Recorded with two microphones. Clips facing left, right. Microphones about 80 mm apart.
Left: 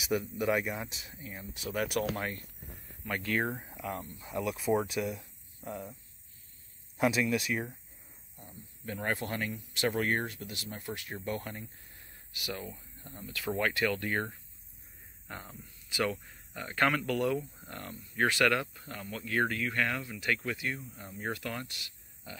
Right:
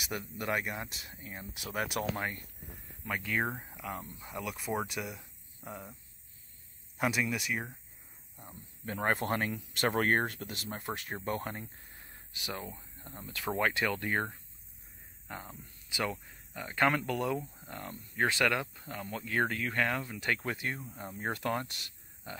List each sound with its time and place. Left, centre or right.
0.0 s speech: centre
7.0 s speech: centre
9.0 s speech: right
10.5 s speech: right
15.2 s speech: centre
16.8 s speech: right